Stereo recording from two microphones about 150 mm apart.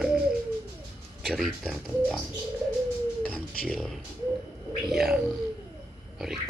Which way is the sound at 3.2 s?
5° left (ahead or behind).